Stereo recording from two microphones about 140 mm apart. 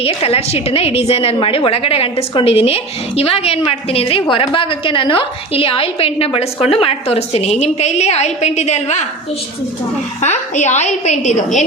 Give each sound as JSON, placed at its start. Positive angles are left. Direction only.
{"t": 0.0, "sound": "a woman's voice", "side_deg": 45}
{"t": 10.2, "sound": "a woman's voice", "side_deg": 55}